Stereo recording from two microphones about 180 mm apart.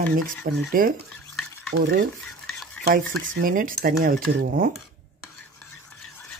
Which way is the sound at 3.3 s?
50° right (ahead or behind).